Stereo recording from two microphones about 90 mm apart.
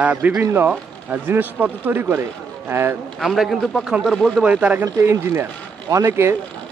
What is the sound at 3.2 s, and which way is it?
A man's voice, 5° right (ahead or behind).